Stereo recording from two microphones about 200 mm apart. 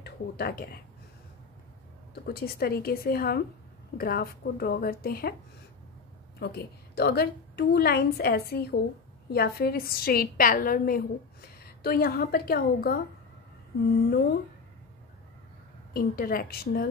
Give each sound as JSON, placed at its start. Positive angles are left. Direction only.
{"t": 0.0, "sound": "speech", "side_deg": 50}
{"t": 2.2, "sound": "a woman's voice", "side_deg": 50}
{"t": 6.4, "sound": "a woman's voice", "side_deg": 55}
{"t": 15.9, "sound": "a woman's voice", "side_deg": 45}